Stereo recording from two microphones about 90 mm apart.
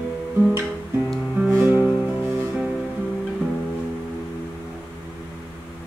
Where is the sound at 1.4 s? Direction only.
20° right (ahead or behind).